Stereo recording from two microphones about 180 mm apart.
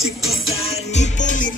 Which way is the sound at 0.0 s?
Centre (ahead or behind).